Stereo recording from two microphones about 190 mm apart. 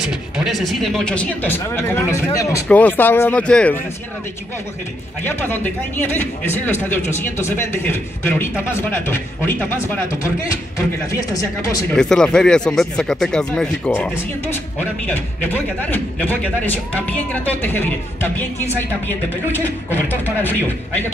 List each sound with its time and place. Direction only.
0.1 s speech: centre (ahead or behind)
5.2 s speech: 10° left (ahead or behind)
11.1 s speech: 15° left (ahead or behind)
12.0 s speech: 5° left (ahead or behind)
19.9 s speech: 10° right (ahead or behind)
20.4 s speech: 10° left (ahead or behind)